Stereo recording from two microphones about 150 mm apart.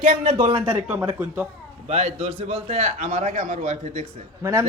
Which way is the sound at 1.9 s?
45° right (ahead or behind).